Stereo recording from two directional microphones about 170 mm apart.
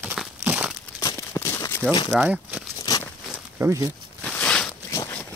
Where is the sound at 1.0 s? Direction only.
15° left (ahead or behind).